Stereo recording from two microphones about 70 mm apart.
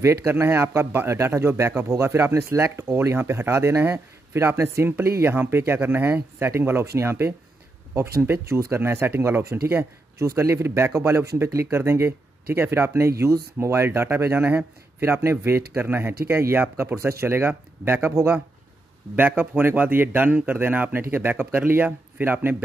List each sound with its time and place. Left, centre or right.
0.0 s speech: right